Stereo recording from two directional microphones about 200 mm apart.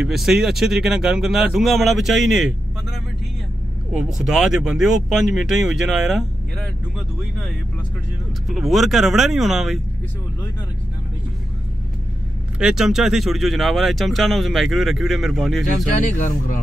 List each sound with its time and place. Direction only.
0.0 s speech: centre (ahead or behind)
8.5 s speech: centre (ahead or behind)
12.5 s speech: 5° right (ahead or behind)
16.1 s speech: 40° left (ahead or behind)